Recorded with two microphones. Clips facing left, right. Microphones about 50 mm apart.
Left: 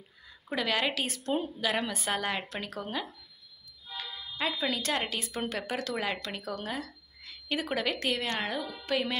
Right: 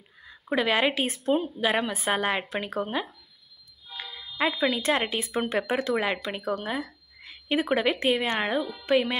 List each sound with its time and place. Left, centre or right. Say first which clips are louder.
0.5 s a woman's voice: right 6 dB; right
1.2 s a woman's voice: right 6 dB; centre
1.6 s a woman's voice: right 5 dB; right